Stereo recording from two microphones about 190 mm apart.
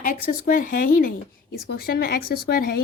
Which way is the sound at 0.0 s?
45° left (ahead or behind).